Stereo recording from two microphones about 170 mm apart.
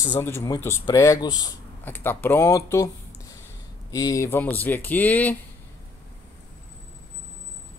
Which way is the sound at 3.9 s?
20° left (ahead or behind).